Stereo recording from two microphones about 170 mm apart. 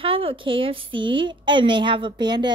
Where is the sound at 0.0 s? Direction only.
35° right (ahead or behind).